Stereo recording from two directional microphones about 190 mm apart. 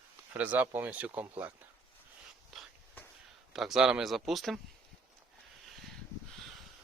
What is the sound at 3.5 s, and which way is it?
Speech, centre (ahead or behind).